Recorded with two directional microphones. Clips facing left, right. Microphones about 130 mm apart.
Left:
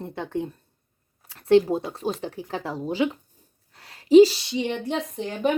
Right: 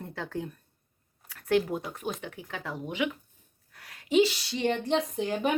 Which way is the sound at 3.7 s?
30° left (ahead or behind).